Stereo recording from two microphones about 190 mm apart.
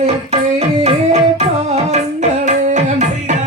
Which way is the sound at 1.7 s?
35° right (ahead or behind).